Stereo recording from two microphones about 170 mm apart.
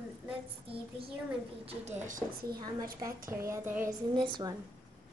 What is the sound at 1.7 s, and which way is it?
Speech, 45° right (ahead or behind).